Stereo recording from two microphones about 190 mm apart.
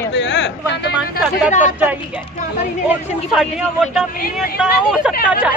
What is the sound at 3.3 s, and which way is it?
A woman's voice, centre (ahead or behind).